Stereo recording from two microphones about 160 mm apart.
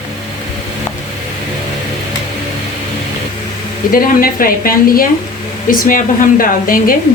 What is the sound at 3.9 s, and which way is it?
Speech, 60° left (ahead or behind).